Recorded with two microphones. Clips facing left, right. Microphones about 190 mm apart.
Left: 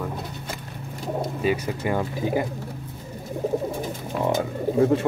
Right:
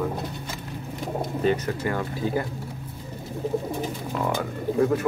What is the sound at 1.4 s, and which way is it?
Speech, 15° left (ahead or behind).